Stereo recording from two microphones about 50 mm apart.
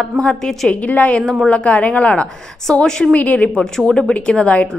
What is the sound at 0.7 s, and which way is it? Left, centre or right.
A woman's voice, left.